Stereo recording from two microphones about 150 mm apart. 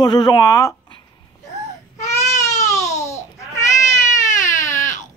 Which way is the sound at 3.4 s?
20° left (ahead or behind).